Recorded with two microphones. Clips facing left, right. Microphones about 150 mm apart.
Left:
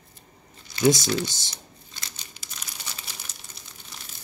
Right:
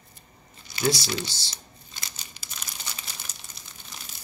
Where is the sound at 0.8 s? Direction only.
20° left (ahead or behind).